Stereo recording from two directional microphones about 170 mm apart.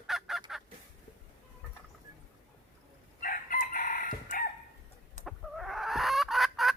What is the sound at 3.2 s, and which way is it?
Chicken, 55° left (ahead or behind).